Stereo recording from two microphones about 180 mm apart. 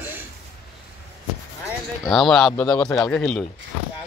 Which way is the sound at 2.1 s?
Centre (ahead or behind).